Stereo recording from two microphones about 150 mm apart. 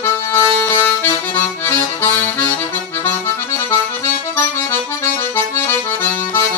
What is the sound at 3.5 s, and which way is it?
Accordion, 15° left (ahead or behind).